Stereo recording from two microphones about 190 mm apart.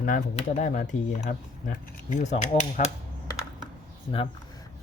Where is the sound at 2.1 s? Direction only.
40° left (ahead or behind).